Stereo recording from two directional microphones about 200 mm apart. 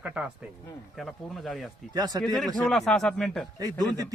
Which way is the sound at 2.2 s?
Centre (ahead or behind).